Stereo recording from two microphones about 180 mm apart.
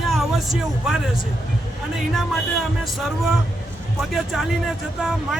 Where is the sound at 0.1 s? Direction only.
Centre (ahead or behind).